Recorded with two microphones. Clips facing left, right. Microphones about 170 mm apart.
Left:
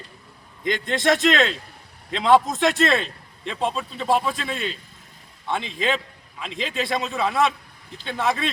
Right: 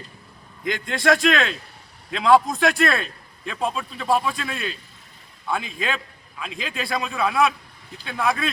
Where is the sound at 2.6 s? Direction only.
25° left (ahead or behind).